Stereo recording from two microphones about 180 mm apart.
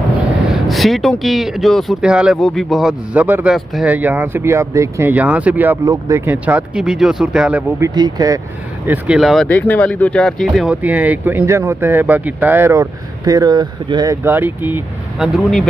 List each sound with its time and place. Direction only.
0.5 s speech: centre (ahead or behind)
7.8 s speech: 20° right (ahead or behind)
8.8 s speech: 10° right (ahead or behind)
9.5 s speech: 10° left (ahead or behind)